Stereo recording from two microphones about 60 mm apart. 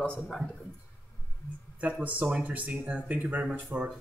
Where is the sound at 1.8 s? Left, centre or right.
Right.